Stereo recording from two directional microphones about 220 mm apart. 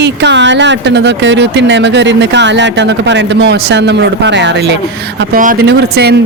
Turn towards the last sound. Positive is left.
turn(degrees=-45)  # may be behind; listen again after turning